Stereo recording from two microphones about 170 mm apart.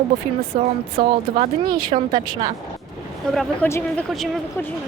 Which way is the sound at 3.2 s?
5° left (ahead or behind).